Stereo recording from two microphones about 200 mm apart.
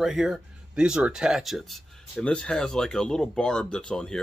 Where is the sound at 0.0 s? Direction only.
Centre (ahead or behind).